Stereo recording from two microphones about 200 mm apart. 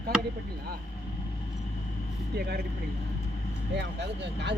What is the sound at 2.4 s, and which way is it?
Speech, 55° right (ahead or behind).